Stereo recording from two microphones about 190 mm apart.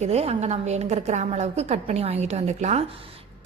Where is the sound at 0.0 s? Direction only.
35° right (ahead or behind).